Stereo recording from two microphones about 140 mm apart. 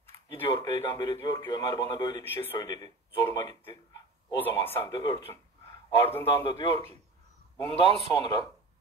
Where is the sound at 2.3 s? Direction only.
15° left (ahead or behind).